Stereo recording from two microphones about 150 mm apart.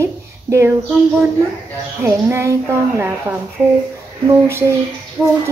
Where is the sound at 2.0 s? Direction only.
20° right (ahead or behind).